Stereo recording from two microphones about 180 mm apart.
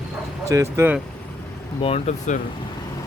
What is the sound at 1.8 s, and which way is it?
Speech, 35° left (ahead or behind).